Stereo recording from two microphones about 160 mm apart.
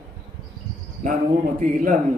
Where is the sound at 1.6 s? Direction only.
55° right (ahead or behind).